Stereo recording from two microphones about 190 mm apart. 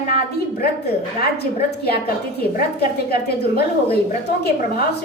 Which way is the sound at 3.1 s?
55° left (ahead or behind).